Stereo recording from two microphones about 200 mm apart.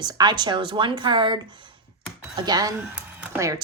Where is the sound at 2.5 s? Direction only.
20° right (ahead or behind).